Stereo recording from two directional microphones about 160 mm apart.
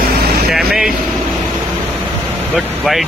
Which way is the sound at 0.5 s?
5° right (ahead or behind).